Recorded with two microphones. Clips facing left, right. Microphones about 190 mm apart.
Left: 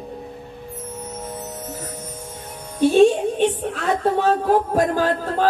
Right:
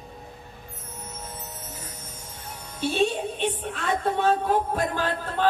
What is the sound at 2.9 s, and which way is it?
Music, 45° left (ahead or behind).